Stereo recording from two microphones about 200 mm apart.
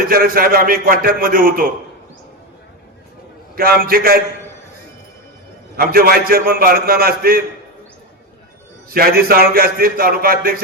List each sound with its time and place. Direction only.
0.1 s a man's voice: 45° right (ahead or behind)
3.5 s a man's voice: 50° right (ahead or behind)
5.7 s a man's voice: 45° right (ahead or behind)
8.9 s a man's voice: 50° right (ahead or behind)